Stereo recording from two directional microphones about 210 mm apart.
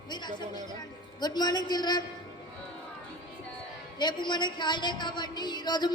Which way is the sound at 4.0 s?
20° left (ahead or behind).